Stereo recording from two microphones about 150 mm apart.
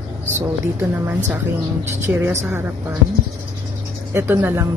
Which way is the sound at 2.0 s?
15° right (ahead or behind).